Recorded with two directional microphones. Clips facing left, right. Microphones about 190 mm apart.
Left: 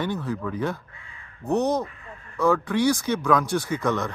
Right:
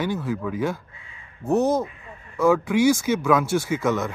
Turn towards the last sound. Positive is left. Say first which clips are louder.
# right 2 dB
turn(degrees=-5)  # may be behind; listen again after turning